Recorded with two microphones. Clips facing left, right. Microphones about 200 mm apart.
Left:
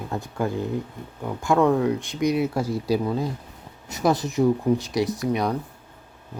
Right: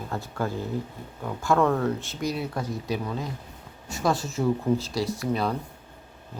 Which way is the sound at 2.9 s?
35° left (ahead or behind).